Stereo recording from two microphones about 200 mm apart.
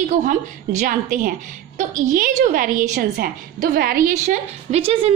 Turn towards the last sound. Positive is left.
turn(degrees=-30)  # may be behind; listen again after turning